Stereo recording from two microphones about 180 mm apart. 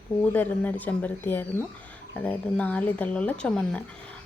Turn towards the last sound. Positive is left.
turn(degrees=5)  # may be behind; listen again after turning